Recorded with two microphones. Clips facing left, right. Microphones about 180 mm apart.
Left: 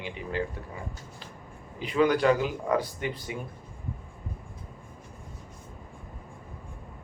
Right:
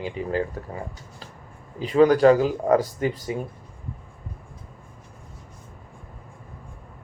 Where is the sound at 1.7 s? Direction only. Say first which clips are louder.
Right 7 dB; 40° right (ahead or behind).